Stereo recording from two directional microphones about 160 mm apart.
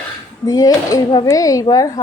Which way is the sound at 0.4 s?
20° left (ahead or behind).